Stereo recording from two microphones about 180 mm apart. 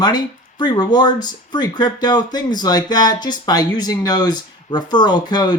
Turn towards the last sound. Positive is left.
turn(degrees=25)  # may be behind; listen again after turning